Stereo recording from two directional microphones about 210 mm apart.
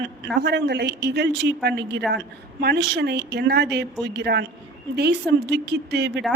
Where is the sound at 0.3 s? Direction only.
50° right (ahead or behind).